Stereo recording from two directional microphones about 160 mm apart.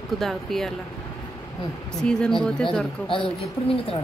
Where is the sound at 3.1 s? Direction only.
35° left (ahead or behind).